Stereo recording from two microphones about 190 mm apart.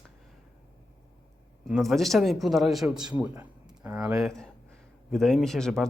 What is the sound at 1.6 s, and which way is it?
Speech, centre (ahead or behind).